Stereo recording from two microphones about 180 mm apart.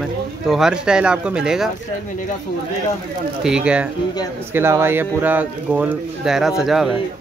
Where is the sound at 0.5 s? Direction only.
5° right (ahead or behind).